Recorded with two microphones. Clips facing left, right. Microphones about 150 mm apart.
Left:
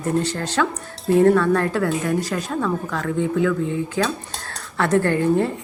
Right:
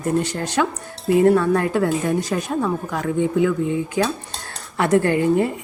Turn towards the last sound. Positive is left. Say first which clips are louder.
# right 1 dB
turn(degrees=-15)  # may be behind; listen again after turning